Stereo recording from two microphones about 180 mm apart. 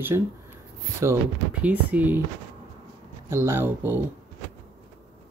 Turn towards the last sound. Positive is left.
turn(degrees=-10)  # may be behind; listen again after turning